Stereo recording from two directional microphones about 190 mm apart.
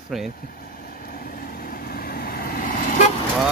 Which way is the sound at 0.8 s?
50° left (ahead or behind).